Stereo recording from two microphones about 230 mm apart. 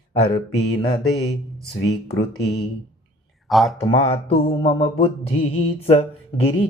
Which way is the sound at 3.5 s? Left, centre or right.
Centre.